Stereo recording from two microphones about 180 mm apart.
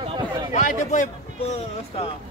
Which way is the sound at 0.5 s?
45° left (ahead or behind).